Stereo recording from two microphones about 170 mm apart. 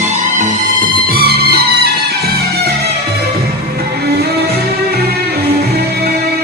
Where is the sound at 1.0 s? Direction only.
65° right (ahead or behind).